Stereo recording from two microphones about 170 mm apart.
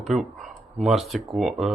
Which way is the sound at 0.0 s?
Centre (ahead or behind).